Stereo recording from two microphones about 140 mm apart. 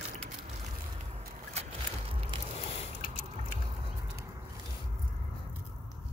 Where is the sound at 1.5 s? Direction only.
50° right (ahead or behind).